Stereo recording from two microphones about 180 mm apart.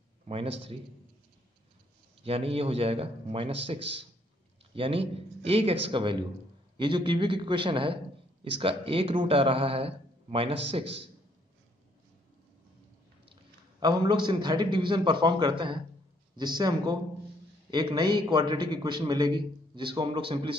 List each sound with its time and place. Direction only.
0.3 s a man's voice: 30° right (ahead or behind)
2.2 s a man's voice: 30° right (ahead or behind)
4.7 s a man's voice: 30° right (ahead or behind)
13.3 s a man's voice: 25° right (ahead or behind)